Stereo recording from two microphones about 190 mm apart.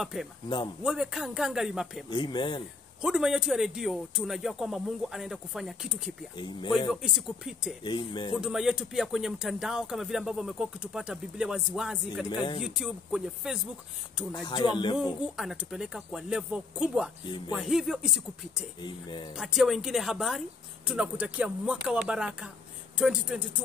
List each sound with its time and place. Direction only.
0.0 s speech: 5° right (ahead or behind)
2.0 s speech: 20° left (ahead or behind)
3.0 s speech: 5° right (ahead or behind)
7.8 s speech: 25° left (ahead or behind)
8.4 s speech: 5° right (ahead or behind)
12.3 s speech: 25° left (ahead or behind)
12.6 s speech: 5° right (ahead or behind)
14.3 s speech: 20° left (ahead or behind)
15.2 s speech: 5° right (ahead or behind)
18.8 s speech: 25° left (ahead or behind)
19.3 s speech: centre (ahead or behind)